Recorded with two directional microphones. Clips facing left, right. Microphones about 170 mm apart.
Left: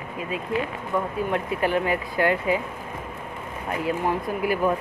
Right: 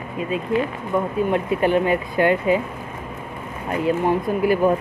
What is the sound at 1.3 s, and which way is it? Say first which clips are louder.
Speech: right 4 dB; 20° right (ahead or behind).